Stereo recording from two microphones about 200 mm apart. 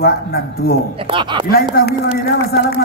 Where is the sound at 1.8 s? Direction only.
50° left (ahead or behind).